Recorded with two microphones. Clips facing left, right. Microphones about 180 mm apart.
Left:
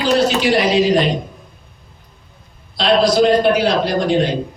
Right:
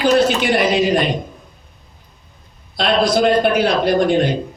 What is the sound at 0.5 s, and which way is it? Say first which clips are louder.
Speech: left 2 dB; 55° right (ahead or behind).